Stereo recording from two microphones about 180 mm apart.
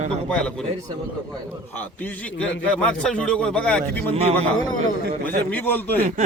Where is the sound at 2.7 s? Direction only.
5° left (ahead or behind).